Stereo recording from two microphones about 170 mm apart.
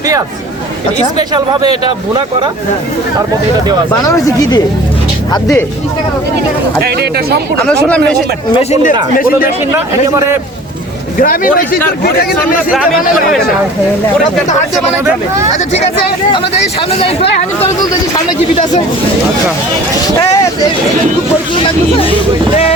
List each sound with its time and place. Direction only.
4.0 s speech: 20° left (ahead or behind)
6.8 s speech: 70° right (ahead or behind)
7.6 s speech: 5° left (ahead or behind)
9.1 s speech: 55° left (ahead or behind)
9.7 s speech: 15° right (ahead or behind)
11.2 s speech: 55° left (ahead or behind)
15.5 s speech: 40° left (ahead or behind)